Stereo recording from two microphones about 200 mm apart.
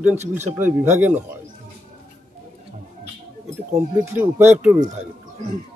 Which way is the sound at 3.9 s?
10° right (ahead or behind).